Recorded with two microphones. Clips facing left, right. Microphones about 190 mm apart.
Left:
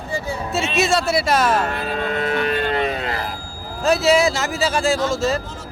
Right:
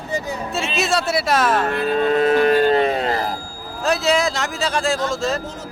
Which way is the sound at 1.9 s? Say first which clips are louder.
Right 10 dB; 35° right (ahead or behind).